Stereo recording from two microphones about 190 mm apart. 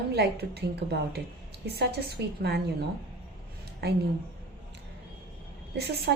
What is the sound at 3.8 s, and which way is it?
Speech, 60° right (ahead or behind).